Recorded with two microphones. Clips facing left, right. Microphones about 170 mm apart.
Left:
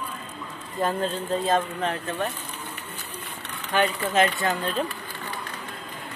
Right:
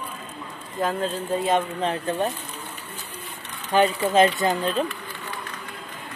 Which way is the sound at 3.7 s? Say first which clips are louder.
Right 4 dB; 25° right (ahead or behind).